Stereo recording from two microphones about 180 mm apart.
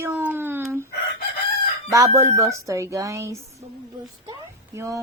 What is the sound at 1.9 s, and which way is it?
Speech, 15° right (ahead or behind).